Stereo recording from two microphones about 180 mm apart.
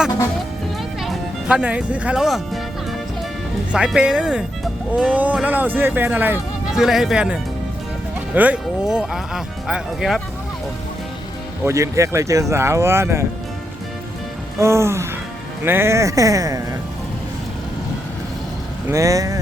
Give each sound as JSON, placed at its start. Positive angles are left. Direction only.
{"t": 1.0, "sound": "speech", "side_deg": -5}
{"t": 3.7, "sound": "speech", "side_deg": -5}
{"t": 8.4, "sound": "speech", "side_deg": -5}
{"t": 11.6, "sound": "speech", "side_deg": -15}
{"t": 14.6, "sound": "speech", "side_deg": -15}
{"t": 18.9, "sound": "speech", "side_deg": -15}